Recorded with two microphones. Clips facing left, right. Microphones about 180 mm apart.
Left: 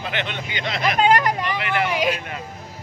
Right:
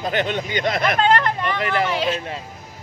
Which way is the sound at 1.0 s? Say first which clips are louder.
Left 1 dB; 10° left (ahead or behind).